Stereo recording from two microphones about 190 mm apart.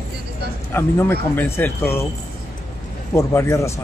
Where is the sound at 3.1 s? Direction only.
15° left (ahead or behind).